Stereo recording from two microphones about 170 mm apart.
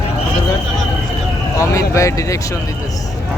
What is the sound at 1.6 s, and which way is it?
Speech, 20° left (ahead or behind).